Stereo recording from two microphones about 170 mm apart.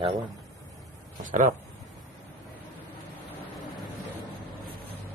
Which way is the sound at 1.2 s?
50° right (ahead or behind).